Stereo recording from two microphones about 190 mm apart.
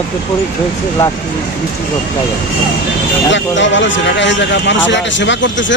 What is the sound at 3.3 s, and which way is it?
A man's voice, 75° left (ahead or behind).